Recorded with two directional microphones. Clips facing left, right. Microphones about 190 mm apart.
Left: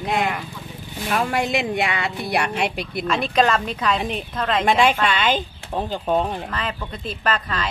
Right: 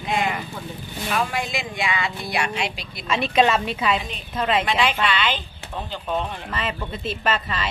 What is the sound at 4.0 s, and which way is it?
Speech, 55° left (ahead or behind).